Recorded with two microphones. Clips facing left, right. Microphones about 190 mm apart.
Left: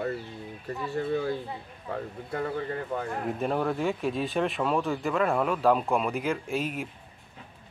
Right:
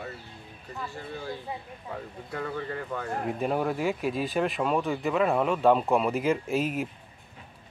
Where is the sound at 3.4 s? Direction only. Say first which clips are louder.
Even; 5° right (ahead or behind).